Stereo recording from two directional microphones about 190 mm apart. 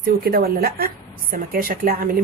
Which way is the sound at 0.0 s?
55° right (ahead or behind).